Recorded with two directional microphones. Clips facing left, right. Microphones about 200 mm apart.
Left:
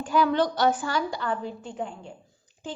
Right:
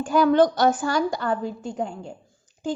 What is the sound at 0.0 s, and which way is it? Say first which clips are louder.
A woman's voice: right 5 dB; 45° right (ahead or behind).